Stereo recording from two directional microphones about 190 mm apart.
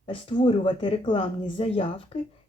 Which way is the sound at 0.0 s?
30° left (ahead or behind).